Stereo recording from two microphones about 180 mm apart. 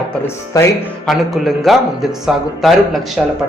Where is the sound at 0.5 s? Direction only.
20° left (ahead or behind).